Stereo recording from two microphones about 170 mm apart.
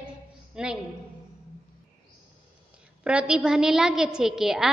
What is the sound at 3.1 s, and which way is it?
A woman's voice, 5° right (ahead or behind).